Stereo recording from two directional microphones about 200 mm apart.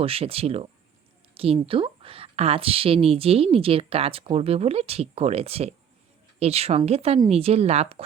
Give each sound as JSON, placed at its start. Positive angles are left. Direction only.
{"t": 0.0, "sound": "a woman's voice", "side_deg": -30}